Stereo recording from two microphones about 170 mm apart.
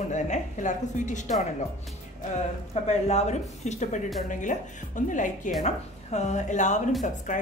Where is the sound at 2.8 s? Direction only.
40° left (ahead or behind).